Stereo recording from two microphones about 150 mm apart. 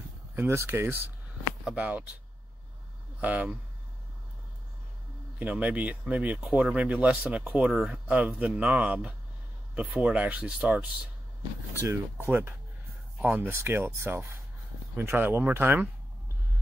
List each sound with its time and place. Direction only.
0.4 s speech: 15° right (ahead or behind)
3.2 s speech: 10° right (ahead or behind)
5.4 s speech: 10° right (ahead or behind)